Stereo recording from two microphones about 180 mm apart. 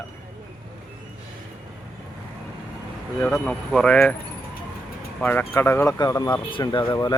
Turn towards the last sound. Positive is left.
turn(degrees=25)  # may be behind; listen again after turning